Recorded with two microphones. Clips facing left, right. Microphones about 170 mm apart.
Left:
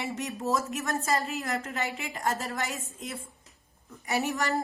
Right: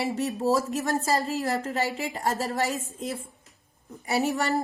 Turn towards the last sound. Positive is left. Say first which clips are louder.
# right 3 dB
turn(degrees=-35)  # may be behind; listen again after turning